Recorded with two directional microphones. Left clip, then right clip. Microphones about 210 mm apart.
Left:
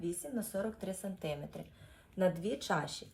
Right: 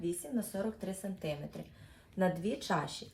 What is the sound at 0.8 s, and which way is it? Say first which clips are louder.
Speech: even; centre (ahead or behind).